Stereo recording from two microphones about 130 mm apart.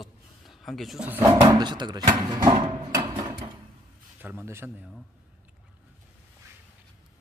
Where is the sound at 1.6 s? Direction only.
35° right (ahead or behind).